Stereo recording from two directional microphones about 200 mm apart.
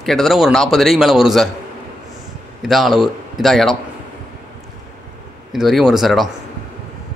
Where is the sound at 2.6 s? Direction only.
Centre (ahead or behind).